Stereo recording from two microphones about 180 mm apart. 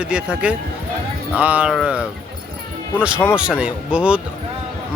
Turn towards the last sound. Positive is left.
turn(degrees=-5)  # may be behind; listen again after turning